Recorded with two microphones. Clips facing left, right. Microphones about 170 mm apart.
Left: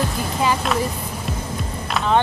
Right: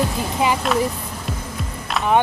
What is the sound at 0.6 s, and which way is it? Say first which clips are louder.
Speech: right 2 dB; centre (ahead or behind).